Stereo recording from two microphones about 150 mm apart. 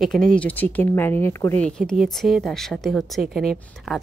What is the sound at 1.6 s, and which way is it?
Speech, 5° left (ahead or behind).